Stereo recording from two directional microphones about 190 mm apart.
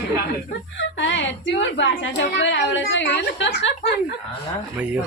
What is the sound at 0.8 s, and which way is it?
A woman's voice, 75° left (ahead or behind).